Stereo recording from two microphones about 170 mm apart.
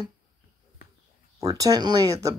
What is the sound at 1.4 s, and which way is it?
Speech, 20° right (ahead or behind).